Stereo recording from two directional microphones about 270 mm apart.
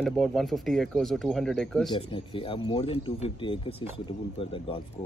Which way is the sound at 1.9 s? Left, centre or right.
Centre.